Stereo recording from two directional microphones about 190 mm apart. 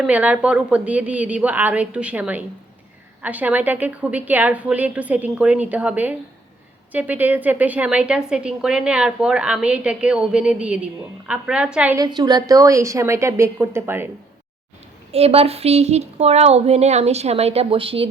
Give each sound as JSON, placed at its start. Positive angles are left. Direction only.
{"t": 0.0, "sound": "a woman's voice", "side_deg": -5}
{"t": 11.9, "sound": "a woman's voice", "side_deg": -20}
{"t": 15.1, "sound": "speech", "side_deg": -30}